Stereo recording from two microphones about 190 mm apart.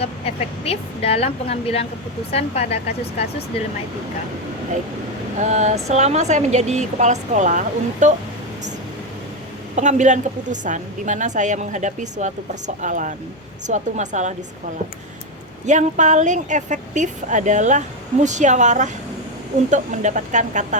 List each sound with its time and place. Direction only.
0.0 s speech: 30° left (ahead or behind)
5.4 s a woman's voice: 40° right (ahead or behind)
9.7 s a woman's voice: 40° right (ahead or behind)
15.6 s a woman's voice: 40° right (ahead or behind)